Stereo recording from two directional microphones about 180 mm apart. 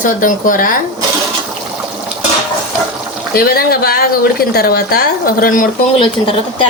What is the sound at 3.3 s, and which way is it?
A woman's voice, 55° left (ahead or behind).